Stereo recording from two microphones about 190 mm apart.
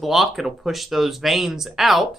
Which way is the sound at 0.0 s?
Centre (ahead or behind).